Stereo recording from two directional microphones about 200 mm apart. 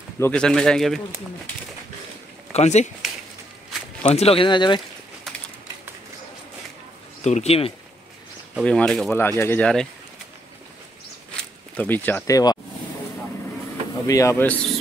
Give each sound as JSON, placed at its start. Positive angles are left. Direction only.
{"t": 0.2, "sound": "speech", "side_deg": 5}
{"t": 2.5, "sound": "speech", "side_deg": 35}
{"t": 4.0, "sound": "speech", "side_deg": 30}
{"t": 7.2, "sound": "speech", "side_deg": 30}
{"t": 8.5, "sound": "speech", "side_deg": 5}
{"t": 11.7, "sound": "speech", "side_deg": 10}
{"t": 14.0, "sound": "speech", "side_deg": 15}